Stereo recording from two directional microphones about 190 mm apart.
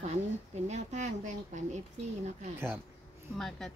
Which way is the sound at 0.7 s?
40° right (ahead or behind).